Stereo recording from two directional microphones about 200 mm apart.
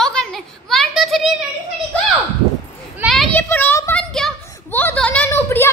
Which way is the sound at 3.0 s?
Centre (ahead or behind).